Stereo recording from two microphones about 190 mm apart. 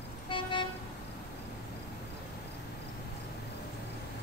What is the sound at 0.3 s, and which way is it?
Vehicle, 25° left (ahead or behind).